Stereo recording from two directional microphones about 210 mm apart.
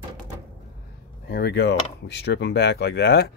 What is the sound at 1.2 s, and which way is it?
Speech, 55° left (ahead or behind).